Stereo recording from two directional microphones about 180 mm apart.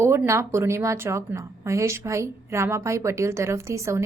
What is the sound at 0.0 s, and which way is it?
A woman's voice, 15° right (ahead or behind).